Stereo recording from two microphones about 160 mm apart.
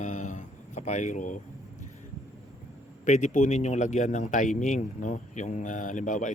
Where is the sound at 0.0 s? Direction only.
50° left (ahead or behind).